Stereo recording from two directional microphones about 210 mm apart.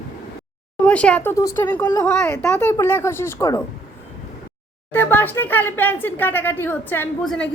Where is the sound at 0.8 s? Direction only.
5° left (ahead or behind).